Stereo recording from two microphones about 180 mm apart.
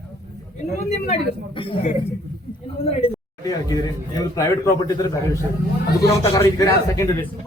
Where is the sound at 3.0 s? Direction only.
35° left (ahead or behind).